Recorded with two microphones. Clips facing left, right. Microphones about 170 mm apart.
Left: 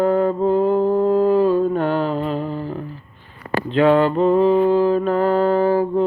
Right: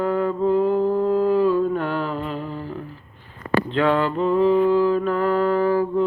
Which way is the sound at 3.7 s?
20° left (ahead or behind).